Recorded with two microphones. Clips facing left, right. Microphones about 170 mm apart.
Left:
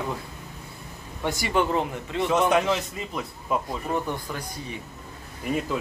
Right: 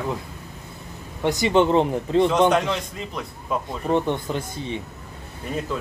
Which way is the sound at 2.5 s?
5° left (ahead or behind).